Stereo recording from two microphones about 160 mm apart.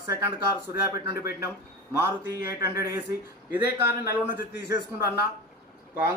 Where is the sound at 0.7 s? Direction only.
20° right (ahead or behind).